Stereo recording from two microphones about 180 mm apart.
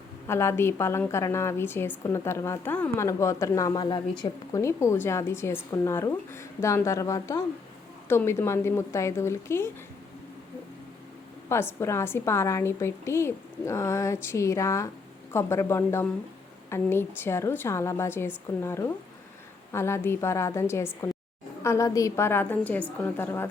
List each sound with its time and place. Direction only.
0.3 s a woman's voice: 15° left (ahead or behind)
11.4 s a woman's voice: 15° left (ahead or behind)